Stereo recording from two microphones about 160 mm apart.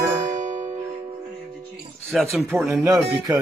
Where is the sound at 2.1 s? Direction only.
Centre (ahead or behind).